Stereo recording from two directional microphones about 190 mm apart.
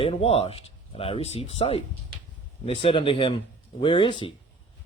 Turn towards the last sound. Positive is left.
turn(degrees=25)  # may be behind; listen again after turning